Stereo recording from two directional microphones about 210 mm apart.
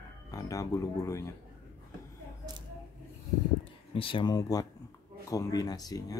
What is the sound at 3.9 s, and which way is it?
Speech, 25° left (ahead or behind).